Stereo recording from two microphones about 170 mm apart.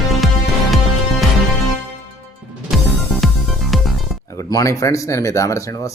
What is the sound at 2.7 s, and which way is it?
Music, centre (ahead or behind).